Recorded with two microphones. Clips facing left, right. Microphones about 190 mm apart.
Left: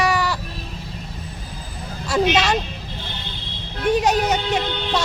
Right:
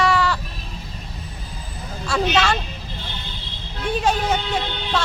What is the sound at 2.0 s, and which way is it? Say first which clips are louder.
Speech: left 2 dB; 10° left (ahead or behind).